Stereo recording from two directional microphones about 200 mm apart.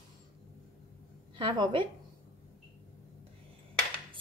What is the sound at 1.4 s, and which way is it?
Speech, 25° right (ahead or behind).